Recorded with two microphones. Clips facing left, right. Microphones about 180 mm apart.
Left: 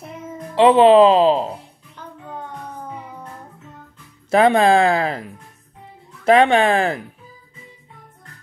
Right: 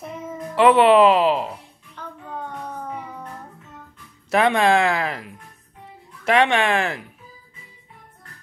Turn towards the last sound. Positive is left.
turn(degrees=30)  # may be behind; listen again after turning